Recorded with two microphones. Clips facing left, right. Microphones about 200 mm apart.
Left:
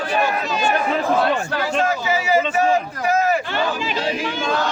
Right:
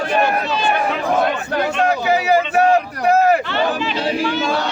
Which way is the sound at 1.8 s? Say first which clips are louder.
Right 4 dB; 60° right (ahead or behind).